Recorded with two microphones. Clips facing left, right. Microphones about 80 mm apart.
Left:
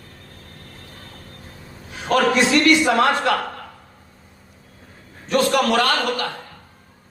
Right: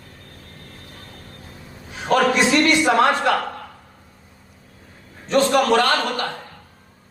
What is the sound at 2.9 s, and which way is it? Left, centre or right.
Speech, right.